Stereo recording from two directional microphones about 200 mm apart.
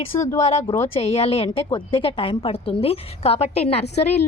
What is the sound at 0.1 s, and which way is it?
Speech, 15° left (ahead or behind).